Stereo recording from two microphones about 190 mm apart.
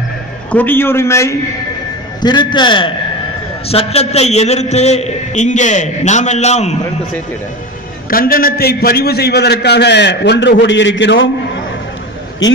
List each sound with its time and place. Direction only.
0.5 s a man's voice: 10° left (ahead or behind); by 6.8 s 35° left (ahead or behind)
8.1 s a man's voice: 50° left (ahead or behind); by 11.2 s 75° left (ahead or behind)